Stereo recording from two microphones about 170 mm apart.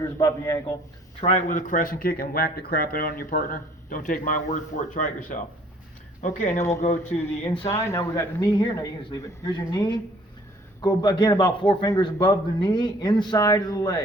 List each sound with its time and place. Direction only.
0.0 s a man's voice: 20° left (ahead or behind)
1.2 s speech: 50° left (ahead or behind)
6.6 s speech: 15° left (ahead or behind)
6.8 s speech: 35° left (ahead or behind)
7.7 s a man's voice: 15° left (ahead or behind)